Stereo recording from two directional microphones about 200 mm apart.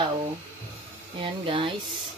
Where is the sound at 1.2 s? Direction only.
25° right (ahead or behind).